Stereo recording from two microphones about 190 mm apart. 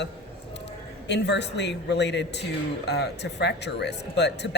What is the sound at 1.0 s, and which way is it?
Speech, 65° left (ahead or behind).